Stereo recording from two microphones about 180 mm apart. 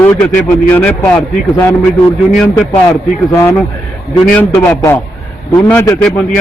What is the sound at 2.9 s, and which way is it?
A man's voice, 15° left (ahead or behind).